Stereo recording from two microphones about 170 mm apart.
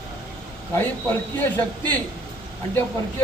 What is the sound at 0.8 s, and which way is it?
Speech, 10° left (ahead or behind).